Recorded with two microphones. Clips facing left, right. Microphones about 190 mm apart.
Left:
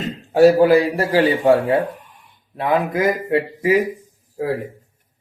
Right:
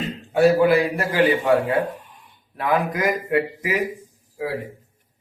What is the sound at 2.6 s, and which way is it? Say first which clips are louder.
Speech: left 3 dB; 25° left (ahead or behind).